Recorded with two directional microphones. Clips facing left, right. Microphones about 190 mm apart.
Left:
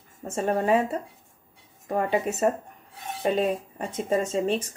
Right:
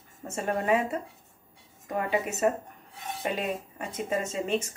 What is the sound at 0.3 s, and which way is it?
Speech, 30° left (ahead or behind).